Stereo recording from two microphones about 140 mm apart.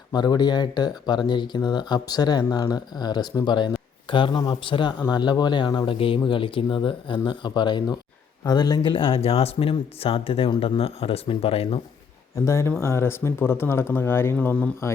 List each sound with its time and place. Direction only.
0.1 s speech: 30° left (ahead or behind)
12.5 s speech: 20° left (ahead or behind)